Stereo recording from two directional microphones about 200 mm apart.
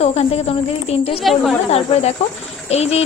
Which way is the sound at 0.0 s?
30° left (ahead or behind).